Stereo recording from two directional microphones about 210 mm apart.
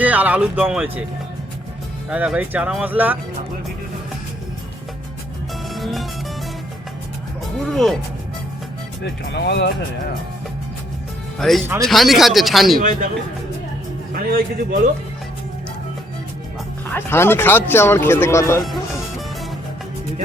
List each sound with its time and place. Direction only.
0.0 s speech: 5° right (ahead or behind)
2.0 s speech: 5° right (ahead or behind)
5.7 s music: centre (ahead or behind)
7.6 s speech: centre (ahead or behind)
9.2 s speech: 55° left (ahead or behind)
11.3 s speech: centre (ahead or behind)
14.1 s a man's voice: 45° right (ahead or behind)
16.9 s speech: 10° left (ahead or behind)
18.6 s music: centre (ahead or behind)